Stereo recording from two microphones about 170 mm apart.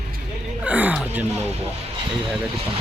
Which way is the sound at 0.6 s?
10° right (ahead or behind).